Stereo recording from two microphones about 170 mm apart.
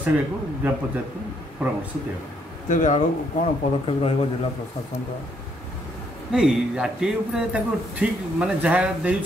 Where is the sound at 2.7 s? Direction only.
45° left (ahead or behind).